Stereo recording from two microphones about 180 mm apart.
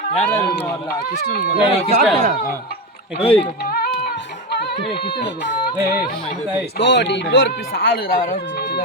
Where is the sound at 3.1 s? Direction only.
30° left (ahead or behind).